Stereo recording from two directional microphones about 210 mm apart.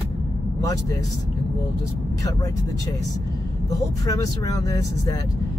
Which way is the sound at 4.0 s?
15° left (ahead or behind).